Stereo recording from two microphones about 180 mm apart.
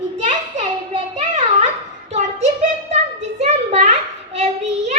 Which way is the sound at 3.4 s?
40° right (ahead or behind).